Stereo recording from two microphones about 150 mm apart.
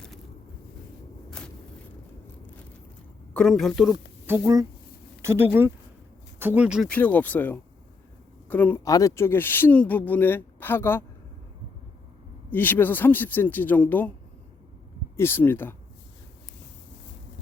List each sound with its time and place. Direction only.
3.3 s a woman's voice: centre (ahead or behind)
4.3 s speech: 20° right (ahead or behind); by 6.8 s 5° right (ahead or behind)
6.8 s speech: 10° left (ahead or behind)
8.8 s speech: 20° left (ahead or behind)
12.5 s speech: 15° left (ahead or behind)
15.1 s speech: 15° left (ahead or behind)